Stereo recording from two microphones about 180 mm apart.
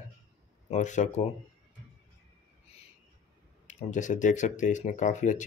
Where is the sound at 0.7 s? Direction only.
40° left (ahead or behind).